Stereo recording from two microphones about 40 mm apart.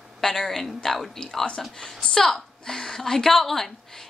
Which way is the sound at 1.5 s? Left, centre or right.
Left.